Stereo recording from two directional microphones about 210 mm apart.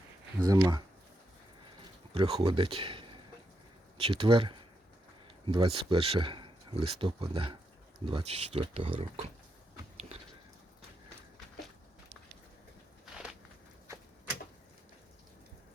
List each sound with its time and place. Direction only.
0.3 s speech: 15° right (ahead or behind)
2.1 s speech: 25° right (ahead or behind)